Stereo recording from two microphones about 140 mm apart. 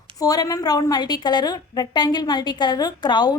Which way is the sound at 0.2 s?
25° left (ahead or behind).